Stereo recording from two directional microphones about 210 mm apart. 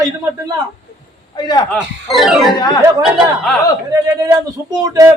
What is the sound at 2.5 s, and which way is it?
Speech, 20° left (ahead or behind).